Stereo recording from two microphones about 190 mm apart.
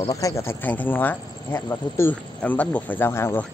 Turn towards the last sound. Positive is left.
turn(degrees=15)  # may be behind; listen again after turning